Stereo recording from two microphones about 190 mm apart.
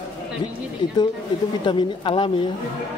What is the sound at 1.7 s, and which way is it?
Speech, 25° left (ahead or behind).